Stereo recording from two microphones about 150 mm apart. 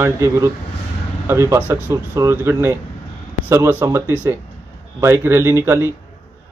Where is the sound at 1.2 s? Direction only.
15° right (ahead or behind).